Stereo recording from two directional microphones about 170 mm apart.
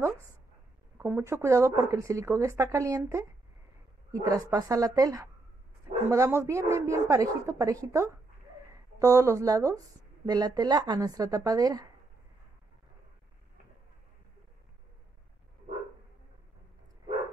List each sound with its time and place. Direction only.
0.9 s speech: 15° right (ahead or behind)
4.1 s speech: 20° right (ahead or behind)